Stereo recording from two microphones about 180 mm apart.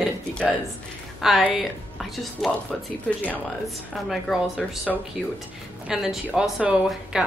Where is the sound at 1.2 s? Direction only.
Centre (ahead or behind).